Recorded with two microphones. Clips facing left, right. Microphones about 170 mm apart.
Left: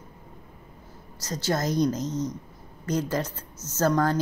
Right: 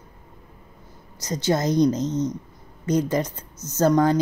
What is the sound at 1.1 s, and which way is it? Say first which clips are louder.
Speech: right 5 dB; 20° right (ahead or behind).